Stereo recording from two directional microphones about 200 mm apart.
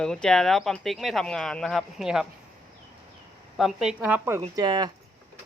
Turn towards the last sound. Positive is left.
turn(degrees=-20)  # may be behind; listen again after turning